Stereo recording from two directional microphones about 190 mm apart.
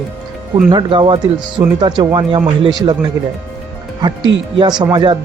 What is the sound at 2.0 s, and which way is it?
Speech, 25° right (ahead or behind).